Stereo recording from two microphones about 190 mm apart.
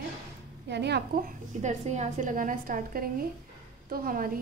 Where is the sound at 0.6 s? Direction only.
60° right (ahead or behind).